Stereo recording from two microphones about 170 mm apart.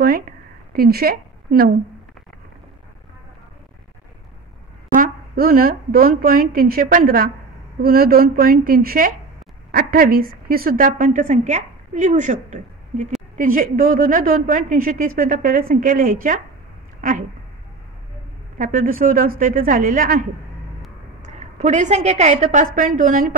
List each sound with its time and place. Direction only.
0.7 s speech: 65° right (ahead or behind)
4.9 s a woman's voice: 55° right (ahead or behind)
18.6 s a woman's voice: 55° right (ahead or behind)
21.4 s a woman's voice: 45° right (ahead or behind)